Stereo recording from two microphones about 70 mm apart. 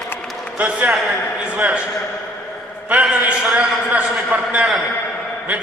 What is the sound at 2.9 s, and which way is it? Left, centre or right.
A man's voice, centre.